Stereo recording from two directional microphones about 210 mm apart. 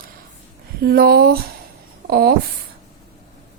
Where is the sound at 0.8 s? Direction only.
45° right (ahead or behind).